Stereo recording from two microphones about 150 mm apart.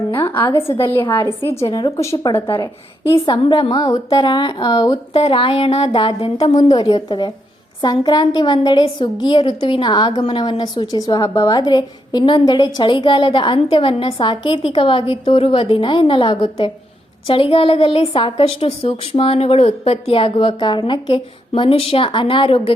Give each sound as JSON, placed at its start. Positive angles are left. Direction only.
{"t": 0.1, "sound": "a sound", "side_deg": 35}
{"t": 0.5, "sound": "a woman's voice", "side_deg": 40}
{"t": 2.1, "sound": "a woman's voice", "side_deg": 35}
{"t": 5.1, "sound": "a woman's voice", "side_deg": 40}